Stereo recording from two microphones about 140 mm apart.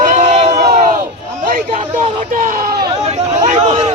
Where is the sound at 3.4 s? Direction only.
55° right (ahead or behind).